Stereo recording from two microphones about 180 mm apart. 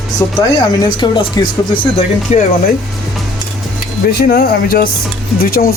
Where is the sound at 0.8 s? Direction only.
25° left (ahead or behind).